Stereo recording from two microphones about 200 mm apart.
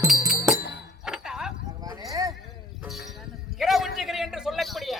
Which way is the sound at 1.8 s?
20° right (ahead or behind).